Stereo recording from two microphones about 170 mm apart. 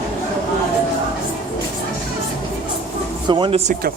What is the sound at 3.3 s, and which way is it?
Speech, 30° right (ahead or behind).